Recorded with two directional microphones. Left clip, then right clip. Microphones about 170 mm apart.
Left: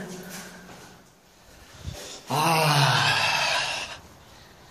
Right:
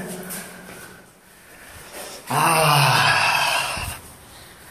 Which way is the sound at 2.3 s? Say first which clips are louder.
Right 5 dB; 30° left (ahead or behind).